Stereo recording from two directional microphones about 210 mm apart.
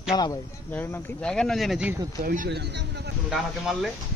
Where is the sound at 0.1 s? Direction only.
15° left (ahead or behind); by 2.0 s 5° right (ahead or behind).